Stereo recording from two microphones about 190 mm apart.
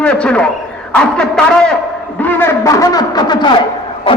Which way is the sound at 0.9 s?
5° left (ahead or behind).